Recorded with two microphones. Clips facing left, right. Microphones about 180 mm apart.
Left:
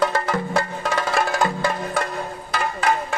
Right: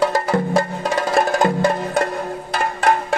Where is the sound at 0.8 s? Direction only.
35° right (ahead or behind).